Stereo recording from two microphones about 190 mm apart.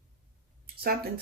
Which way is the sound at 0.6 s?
55° right (ahead or behind).